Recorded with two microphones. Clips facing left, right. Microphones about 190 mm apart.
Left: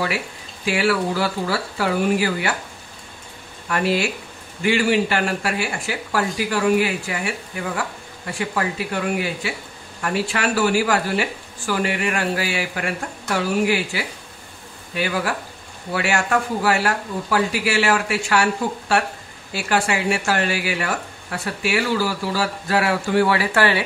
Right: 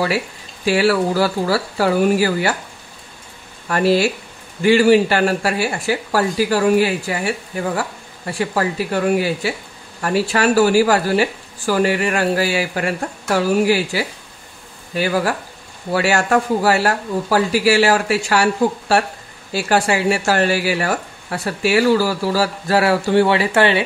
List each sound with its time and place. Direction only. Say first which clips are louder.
0.7 s speech: right 4 dB; 35° right (ahead or behind)
3.6 s speech: right 5 dB; 35° right (ahead or behind)
8.4 s speech: right 4 dB; 35° right (ahead or behind)